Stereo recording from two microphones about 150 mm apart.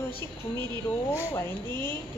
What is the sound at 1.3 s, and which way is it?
Speech, 15° left (ahead or behind).